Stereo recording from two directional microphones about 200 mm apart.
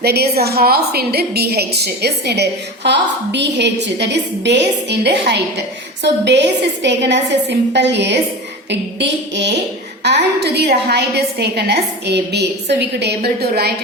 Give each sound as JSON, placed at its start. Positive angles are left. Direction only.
{"t": 0.0, "sound": "a woman's voice", "side_deg": -50}